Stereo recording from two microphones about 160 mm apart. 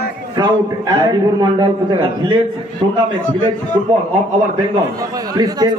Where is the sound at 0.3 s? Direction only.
30° right (ahead or behind).